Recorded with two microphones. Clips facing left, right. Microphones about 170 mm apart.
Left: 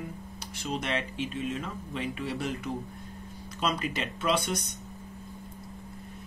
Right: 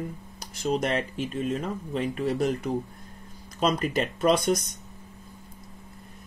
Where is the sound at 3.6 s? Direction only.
45° right (ahead or behind).